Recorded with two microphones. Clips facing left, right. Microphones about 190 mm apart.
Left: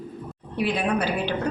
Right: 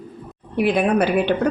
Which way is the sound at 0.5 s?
55° right (ahead or behind).